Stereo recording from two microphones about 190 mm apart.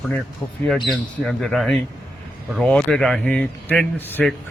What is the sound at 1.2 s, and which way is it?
Speech, centre (ahead or behind).